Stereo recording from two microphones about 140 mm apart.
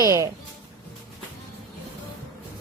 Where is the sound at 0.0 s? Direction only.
25° right (ahead or behind).